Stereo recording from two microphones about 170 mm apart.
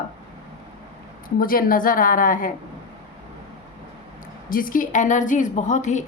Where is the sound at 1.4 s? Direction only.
55° left (ahead or behind).